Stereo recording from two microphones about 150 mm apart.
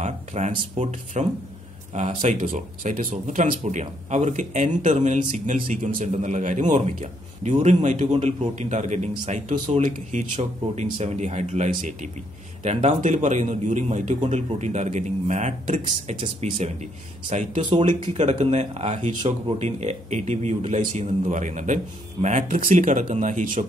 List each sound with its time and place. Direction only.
0.0 s speech: 50° right (ahead or behind)
3.1 s speech: 45° right (ahead or behind)
17.6 s speech: 30° right (ahead or behind)
18.1 s speech: 45° right (ahead or behind)